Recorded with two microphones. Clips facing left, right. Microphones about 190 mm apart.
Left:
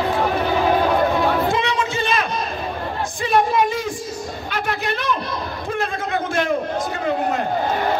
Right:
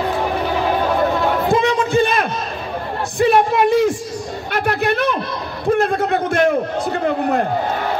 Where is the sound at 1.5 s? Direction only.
50° right (ahead or behind).